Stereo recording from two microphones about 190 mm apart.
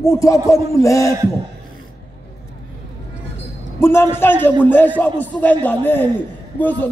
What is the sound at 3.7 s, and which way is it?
A man's voice, 15° left (ahead or behind).